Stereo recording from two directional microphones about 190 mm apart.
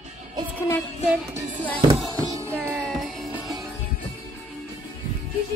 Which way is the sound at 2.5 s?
5° left (ahead or behind).